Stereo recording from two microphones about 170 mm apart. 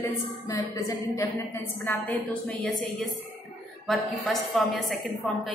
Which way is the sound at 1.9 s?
5° left (ahead or behind).